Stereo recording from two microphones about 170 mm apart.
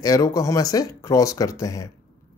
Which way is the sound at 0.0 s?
20° left (ahead or behind).